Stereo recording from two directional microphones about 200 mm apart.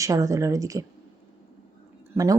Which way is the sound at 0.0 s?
15° right (ahead or behind).